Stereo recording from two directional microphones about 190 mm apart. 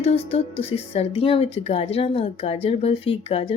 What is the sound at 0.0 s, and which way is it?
A woman's voice, 30° left (ahead or behind).